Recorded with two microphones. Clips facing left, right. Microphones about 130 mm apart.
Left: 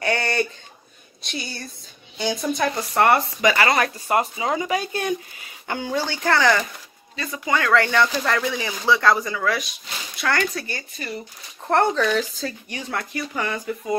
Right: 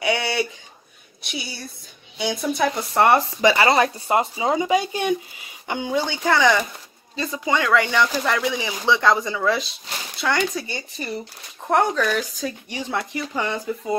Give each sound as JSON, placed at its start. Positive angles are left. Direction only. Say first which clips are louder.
{"t": 0.0, "sound": "a sound", "louder": "even", "side_deg": -5}
{"t": 1.3, "sound": "speech", "louder": "even", "side_deg": -5}
{"t": 2.7, "sound": "speech", "louder": "right 1 dB", "side_deg": -20}
{"t": 7.2, "sound": "speech", "louder": "right 1 dB", "side_deg": -25}
{"t": 11.6, "sound": "speech", "louder": "even", "side_deg": -10}
{"t": 11.9, "sound": "speech", "louder": "left 1 dB", "side_deg": 0}
{"t": 12.2, "sound": "speech", "louder": "left 1 dB", "side_deg": -15}